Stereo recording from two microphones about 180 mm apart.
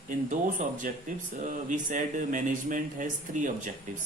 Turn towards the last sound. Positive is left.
turn(degrees=-45)  # may be behind; listen again after turning